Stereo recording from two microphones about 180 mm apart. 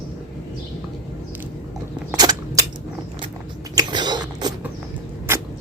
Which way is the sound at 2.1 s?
20° right (ahead or behind).